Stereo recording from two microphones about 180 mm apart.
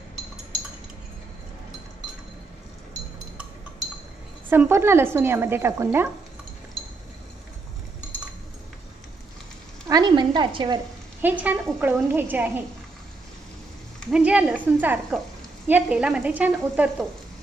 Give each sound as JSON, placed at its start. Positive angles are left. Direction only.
{"t": 4.5, "sound": "speech", "side_deg": -15}
{"t": 9.8, "sound": "a woman's voice", "side_deg": -20}
{"t": 11.1, "sound": "speech", "side_deg": -10}
{"t": 13.9, "sound": "speech", "side_deg": -5}